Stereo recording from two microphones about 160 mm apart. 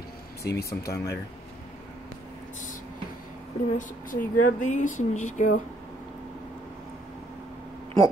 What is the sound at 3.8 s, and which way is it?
Speech, 55° left (ahead or behind).